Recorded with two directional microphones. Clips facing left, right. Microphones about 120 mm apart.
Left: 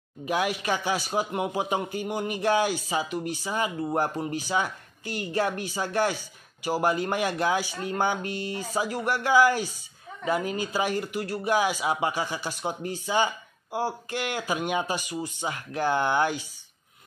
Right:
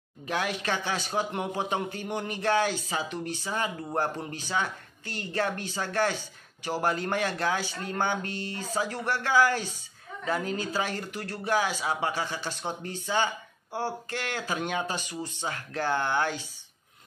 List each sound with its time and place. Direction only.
0.2 s speech: 10° left (ahead or behind)